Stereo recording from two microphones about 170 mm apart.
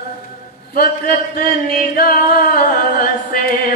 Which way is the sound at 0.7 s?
60° left (ahead or behind).